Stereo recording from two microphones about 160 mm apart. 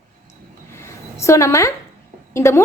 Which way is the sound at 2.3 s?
15° left (ahead or behind).